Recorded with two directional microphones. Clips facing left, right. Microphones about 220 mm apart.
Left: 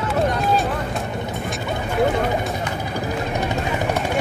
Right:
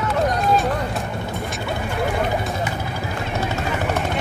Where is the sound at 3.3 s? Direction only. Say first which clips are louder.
Right 2 dB; 15° left (ahead or behind).